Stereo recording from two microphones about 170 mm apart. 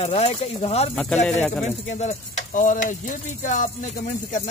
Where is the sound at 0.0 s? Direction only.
35° left (ahead or behind).